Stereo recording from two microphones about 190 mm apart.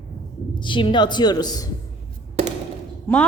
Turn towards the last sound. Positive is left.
turn(degrees=5)  # may be behind; listen again after turning